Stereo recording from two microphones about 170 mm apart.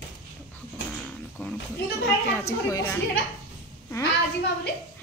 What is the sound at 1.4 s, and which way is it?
Speech, 10° left (ahead or behind).